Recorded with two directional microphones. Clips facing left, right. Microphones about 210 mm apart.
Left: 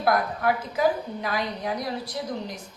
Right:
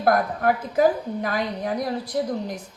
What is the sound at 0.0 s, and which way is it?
A woman's voice, 45° right (ahead or behind).